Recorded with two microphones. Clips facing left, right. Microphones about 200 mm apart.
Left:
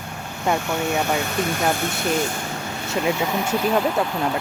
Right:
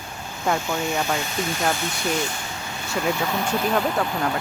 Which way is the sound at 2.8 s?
20° left (ahead or behind).